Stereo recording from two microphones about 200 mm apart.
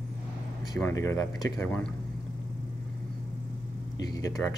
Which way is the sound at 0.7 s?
15° left (ahead or behind).